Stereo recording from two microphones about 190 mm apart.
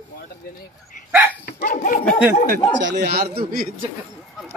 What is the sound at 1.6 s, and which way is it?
Dog, 45° left (ahead or behind).